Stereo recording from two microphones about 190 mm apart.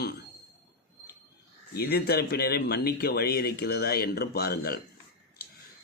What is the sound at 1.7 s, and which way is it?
Speech, 55° left (ahead or behind).